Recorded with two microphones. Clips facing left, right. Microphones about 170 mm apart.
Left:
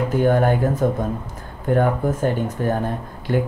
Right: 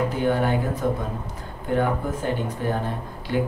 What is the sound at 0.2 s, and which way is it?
Speech, 50° left (ahead or behind).